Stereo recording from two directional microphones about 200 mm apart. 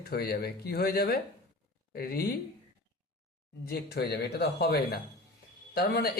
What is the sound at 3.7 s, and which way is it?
A man's voice, 55° left (ahead or behind).